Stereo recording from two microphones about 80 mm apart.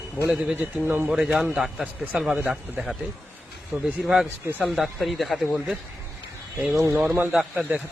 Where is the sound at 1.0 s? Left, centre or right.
Centre.